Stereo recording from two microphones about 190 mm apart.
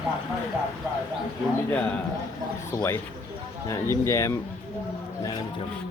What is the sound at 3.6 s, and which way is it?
Speech, 15° left (ahead or behind).